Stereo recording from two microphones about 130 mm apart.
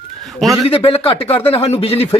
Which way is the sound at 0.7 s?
45° left (ahead or behind).